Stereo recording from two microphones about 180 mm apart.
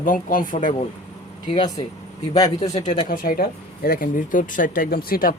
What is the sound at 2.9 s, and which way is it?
Speech, 50° left (ahead or behind).